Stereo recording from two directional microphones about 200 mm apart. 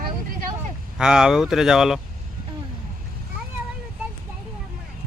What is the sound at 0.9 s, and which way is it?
Speech, 5° right (ahead or behind).